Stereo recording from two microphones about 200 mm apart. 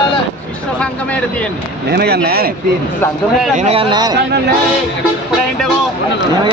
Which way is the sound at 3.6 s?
30° right (ahead or behind).